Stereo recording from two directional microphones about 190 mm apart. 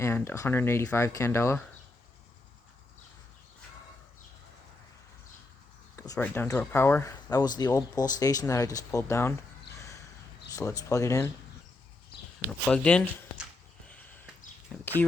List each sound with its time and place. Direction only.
0.0 s speech: 15° left (ahead or behind)
6.0 s speech: 10° left (ahead or behind)
9.7 s gasp: 15° left (ahead or behind)
10.5 s speech: 15° left (ahead or behind)
12.5 s speech: 5° left (ahead or behind)
13.8 s a sound: 5° left (ahead or behind)
14.7 s speech: 5° left (ahead or behind)